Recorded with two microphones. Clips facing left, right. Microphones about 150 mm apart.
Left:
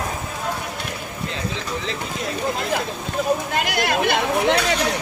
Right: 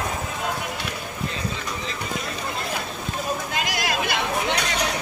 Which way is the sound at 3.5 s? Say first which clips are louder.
Left 4 dB; 55° left (ahead or behind).